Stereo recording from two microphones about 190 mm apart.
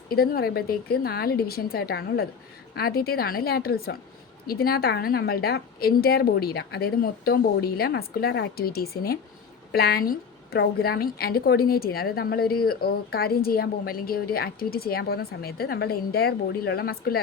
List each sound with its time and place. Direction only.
0.1 s a woman's voice: 55° left (ahead or behind)